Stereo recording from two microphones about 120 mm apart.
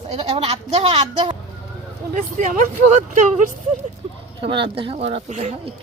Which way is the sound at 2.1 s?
90° right.